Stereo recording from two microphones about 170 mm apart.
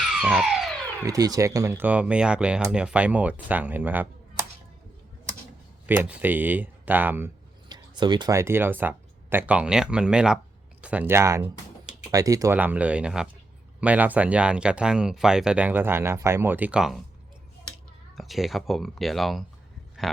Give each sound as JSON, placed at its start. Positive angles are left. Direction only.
{"t": 0.0, "sound": "a sound", "side_deg": -5}
{"t": 1.0, "sound": "speech", "side_deg": -20}
{"t": 5.8, "sound": "speech", "side_deg": -10}
{"t": 7.7, "sound": "speech", "side_deg": -25}